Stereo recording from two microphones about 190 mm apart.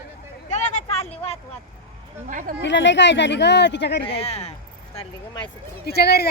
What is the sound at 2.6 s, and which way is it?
Speech, 70° left (ahead or behind).